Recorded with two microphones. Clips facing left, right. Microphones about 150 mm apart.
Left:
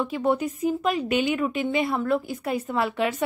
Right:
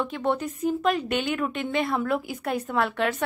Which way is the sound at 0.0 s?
5° left (ahead or behind).